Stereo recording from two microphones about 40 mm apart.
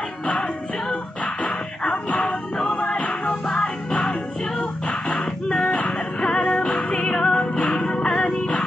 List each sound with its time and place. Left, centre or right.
1.2 s music: left
2.2 s music: centre